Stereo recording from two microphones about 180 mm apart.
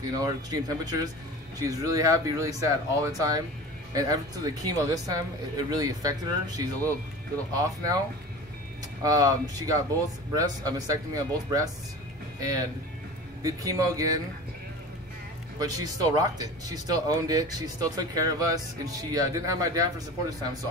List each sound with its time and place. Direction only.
0.2 s speech: 20° right (ahead or behind)
9.0 s speech: 20° right (ahead or behind)
13.4 s speech: 20° right (ahead or behind)
15.6 s speech: 20° right (ahead or behind)